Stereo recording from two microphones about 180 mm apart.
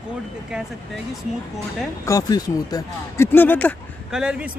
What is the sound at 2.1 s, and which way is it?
Speech, 20° left (ahead or behind).